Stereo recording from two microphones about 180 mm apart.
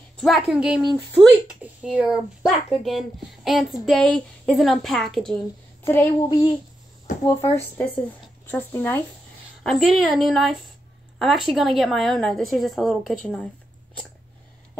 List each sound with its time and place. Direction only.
0.2 s speech: centre (ahead or behind)
6.2 s speech: 25° left (ahead or behind)
7.2 s speech: 15° left (ahead or behind)
9.6 s speech: centre (ahead or behind)